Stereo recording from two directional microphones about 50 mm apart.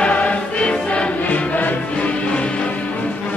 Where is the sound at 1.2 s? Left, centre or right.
Left.